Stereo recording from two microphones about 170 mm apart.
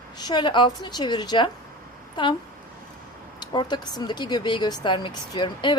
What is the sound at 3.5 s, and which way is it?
Speech, 25° left (ahead or behind).